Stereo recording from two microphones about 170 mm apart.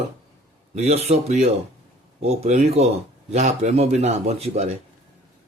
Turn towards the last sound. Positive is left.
turn(degrees=-40)  # may be behind; listen again after turning